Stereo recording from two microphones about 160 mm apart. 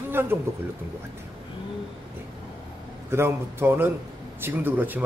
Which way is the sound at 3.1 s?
15° right (ahead or behind).